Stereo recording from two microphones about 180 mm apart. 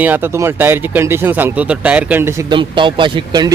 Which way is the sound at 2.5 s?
25° right (ahead or behind).